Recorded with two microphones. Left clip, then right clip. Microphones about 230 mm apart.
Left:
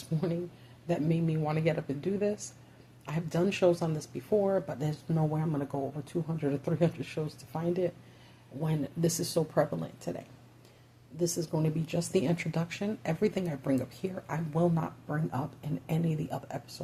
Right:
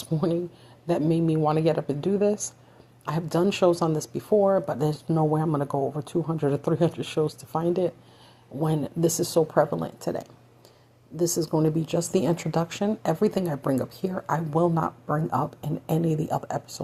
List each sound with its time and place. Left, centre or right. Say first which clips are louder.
0.1 s speech: right 8 dB; right